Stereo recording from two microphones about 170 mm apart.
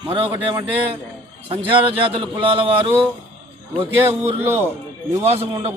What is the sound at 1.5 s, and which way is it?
A man's voice, 30° right (ahead or behind).